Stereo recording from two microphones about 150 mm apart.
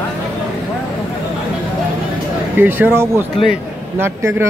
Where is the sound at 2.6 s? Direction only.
15° right (ahead or behind).